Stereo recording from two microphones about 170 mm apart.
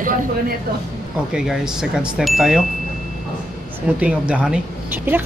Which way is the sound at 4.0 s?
5° right (ahead or behind).